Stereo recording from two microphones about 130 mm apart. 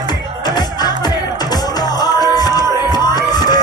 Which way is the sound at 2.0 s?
30° left (ahead or behind).